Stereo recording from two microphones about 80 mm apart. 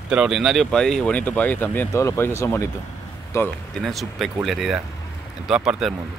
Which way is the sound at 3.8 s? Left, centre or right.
Centre.